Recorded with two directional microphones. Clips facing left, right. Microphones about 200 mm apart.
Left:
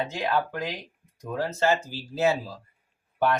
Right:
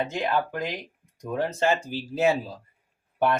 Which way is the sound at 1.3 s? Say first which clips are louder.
Even; 20° right (ahead or behind).